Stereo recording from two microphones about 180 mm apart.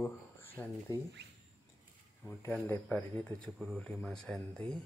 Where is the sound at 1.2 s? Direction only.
70° right (ahead or behind).